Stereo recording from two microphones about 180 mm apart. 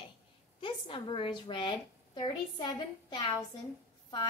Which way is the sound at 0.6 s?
30° left (ahead or behind).